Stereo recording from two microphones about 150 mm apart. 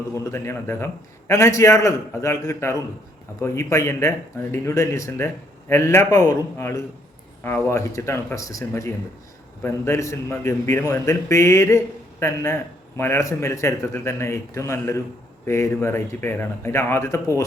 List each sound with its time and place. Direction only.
0.3 s a man's voice: 15° left (ahead or behind)